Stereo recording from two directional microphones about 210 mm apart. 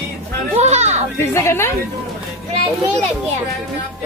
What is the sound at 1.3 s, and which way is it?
Speech, 10° left (ahead or behind).